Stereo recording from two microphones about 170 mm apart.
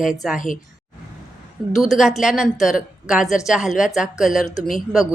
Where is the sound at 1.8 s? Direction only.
Centre (ahead or behind).